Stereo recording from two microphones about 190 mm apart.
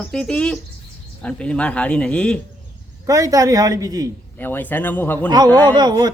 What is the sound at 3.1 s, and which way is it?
Speech, 20° right (ahead or behind).